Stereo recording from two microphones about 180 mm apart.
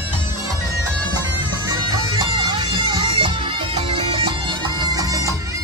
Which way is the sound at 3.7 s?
30° right (ahead or behind).